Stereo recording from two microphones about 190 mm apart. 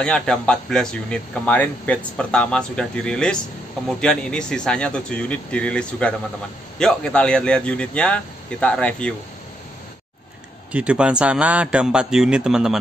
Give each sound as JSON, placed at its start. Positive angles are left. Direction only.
{"t": 0.0, "sound": "speech", "side_deg": 5}
{"t": 10.7, "sound": "speech", "side_deg": -5}